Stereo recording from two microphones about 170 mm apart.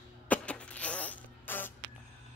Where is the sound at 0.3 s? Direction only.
5° left (ahead or behind).